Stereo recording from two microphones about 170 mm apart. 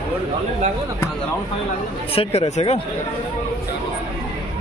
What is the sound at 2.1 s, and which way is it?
Speech, 35° left (ahead or behind).